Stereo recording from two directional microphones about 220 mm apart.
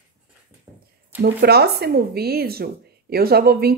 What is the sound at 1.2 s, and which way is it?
A woman's voice, 50° right (ahead or behind).